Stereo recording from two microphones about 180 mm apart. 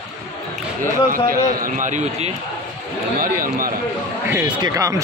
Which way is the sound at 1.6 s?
45° right (ahead or behind).